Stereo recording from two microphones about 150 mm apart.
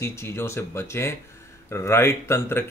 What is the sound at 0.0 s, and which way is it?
Speech, 15° left (ahead or behind).